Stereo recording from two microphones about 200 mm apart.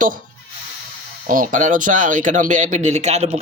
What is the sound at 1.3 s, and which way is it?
Speech, 40° right (ahead or behind).